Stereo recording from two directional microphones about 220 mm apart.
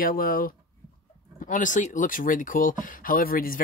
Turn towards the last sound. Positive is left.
turn(degrees=40)  # may be behind; listen again after turning